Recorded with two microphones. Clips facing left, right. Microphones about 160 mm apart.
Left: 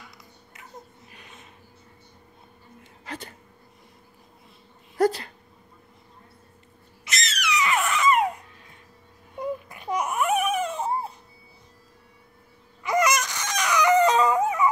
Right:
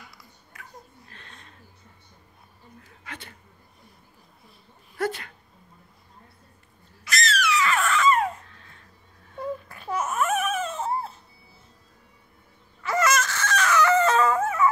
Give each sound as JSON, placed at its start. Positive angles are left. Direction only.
{"t": 0.5, "sound": "babbling", "side_deg": 20}
{"t": 3.1, "sound": "speech", "side_deg": 40}
{"t": 4.9, "sound": "dog", "side_deg": 35}
{"t": 7.1, "sound": "babbling", "side_deg": 20}
{"t": 9.3, "sound": "baby cry", "side_deg": 15}
{"t": 12.8, "sound": "dog", "side_deg": 15}